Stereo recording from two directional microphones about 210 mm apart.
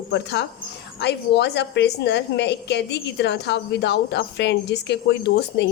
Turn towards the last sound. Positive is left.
turn(degrees=55)  # may be behind; listen again after turning